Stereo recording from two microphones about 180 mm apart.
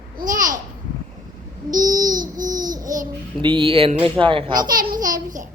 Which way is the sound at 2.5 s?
20° right (ahead or behind).